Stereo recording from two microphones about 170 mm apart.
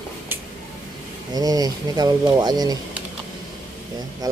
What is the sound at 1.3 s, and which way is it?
Speech, 20° right (ahead or behind).